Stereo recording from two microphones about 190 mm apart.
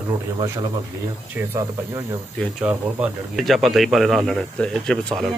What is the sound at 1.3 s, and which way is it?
Speech, 15° right (ahead or behind).